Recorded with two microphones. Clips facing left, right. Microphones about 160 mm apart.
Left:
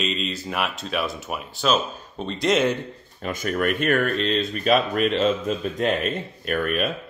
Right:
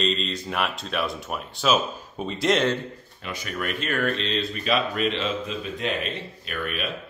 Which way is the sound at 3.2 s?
45° left (ahead or behind).